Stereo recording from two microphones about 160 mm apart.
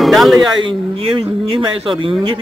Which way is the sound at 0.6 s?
30° right (ahead or behind).